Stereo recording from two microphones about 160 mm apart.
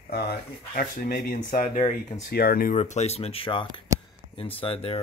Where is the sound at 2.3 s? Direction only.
75° left (ahead or behind); by 3.7 s 35° left (ahead or behind).